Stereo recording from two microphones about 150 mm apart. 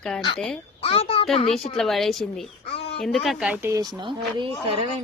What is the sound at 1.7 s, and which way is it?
Speech, centre (ahead or behind).